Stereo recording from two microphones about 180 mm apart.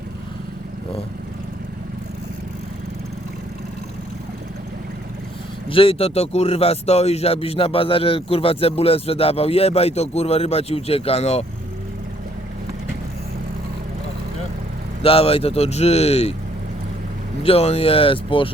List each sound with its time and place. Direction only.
5.6 s speech: 30° left (ahead or behind)
15.0 s speech: 30° left (ahead or behind)
17.4 s speech: 35° left (ahead or behind)